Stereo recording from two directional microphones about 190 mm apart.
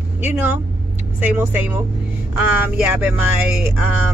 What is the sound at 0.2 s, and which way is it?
Speech, 10° right (ahead or behind).